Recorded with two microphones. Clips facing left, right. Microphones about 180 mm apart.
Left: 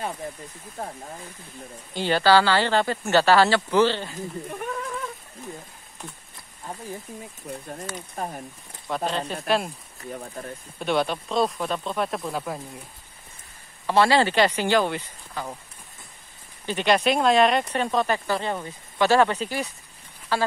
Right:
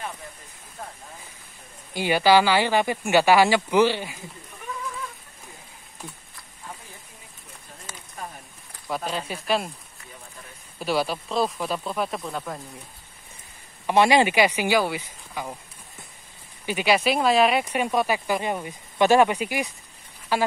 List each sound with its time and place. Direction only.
2.0 s speech: 10° right (ahead or behind)
8.2 s speech: 50° left (ahead or behind)
8.8 s speech: 5° right (ahead or behind)
10.1 s speech: 50° left (ahead or behind)
10.8 s speech: 5° right (ahead or behind)
13.8 s speech: 15° right (ahead or behind)
16.6 s speech: 5° right (ahead or behind)